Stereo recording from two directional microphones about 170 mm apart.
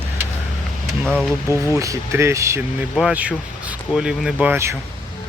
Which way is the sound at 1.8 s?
15° right (ahead or behind).